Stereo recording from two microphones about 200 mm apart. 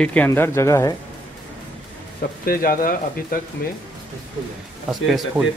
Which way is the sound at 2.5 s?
45° left (ahead or behind).